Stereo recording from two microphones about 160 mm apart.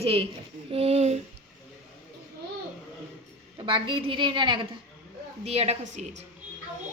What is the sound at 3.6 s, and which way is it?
A woman's voice, 30° right (ahead or behind).